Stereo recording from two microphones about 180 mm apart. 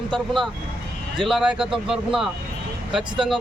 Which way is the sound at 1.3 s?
5° right (ahead or behind).